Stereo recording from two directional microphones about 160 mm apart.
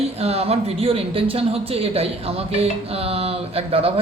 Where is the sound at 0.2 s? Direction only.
40° right (ahead or behind).